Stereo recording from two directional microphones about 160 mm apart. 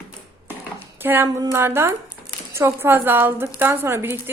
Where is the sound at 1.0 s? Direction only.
15° right (ahead or behind).